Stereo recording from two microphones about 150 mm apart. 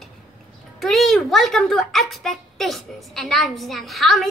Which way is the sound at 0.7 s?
Centre (ahead or behind).